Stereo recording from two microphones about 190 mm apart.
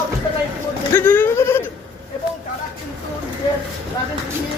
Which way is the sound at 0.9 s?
10° left (ahead or behind).